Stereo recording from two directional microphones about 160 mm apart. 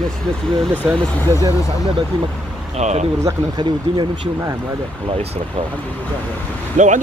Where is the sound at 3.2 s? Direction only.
25° right (ahead or behind).